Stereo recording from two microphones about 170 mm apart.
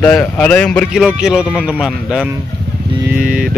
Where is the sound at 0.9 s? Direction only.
5° right (ahead or behind).